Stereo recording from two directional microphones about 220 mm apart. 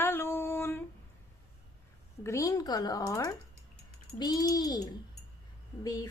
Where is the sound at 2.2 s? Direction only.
15° left (ahead or behind).